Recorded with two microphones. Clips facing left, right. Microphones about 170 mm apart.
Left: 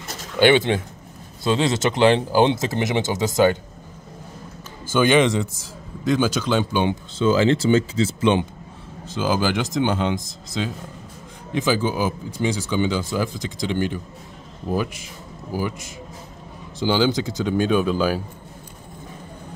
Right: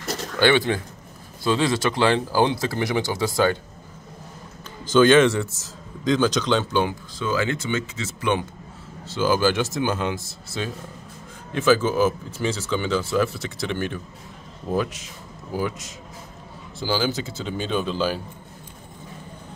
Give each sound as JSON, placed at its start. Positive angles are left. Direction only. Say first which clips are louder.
{"t": 0.4, "sound": "speech", "louder": "left 3 dB", "side_deg": 20}
{"t": 4.8, "sound": "speech", "louder": "right 2 dB", "side_deg": 10}
{"t": 6.9, "sound": "speech", "louder": "left 7 dB", "side_deg": 25}
{"t": 9.1, "sound": "speech", "louder": "right 1 dB", "side_deg": 15}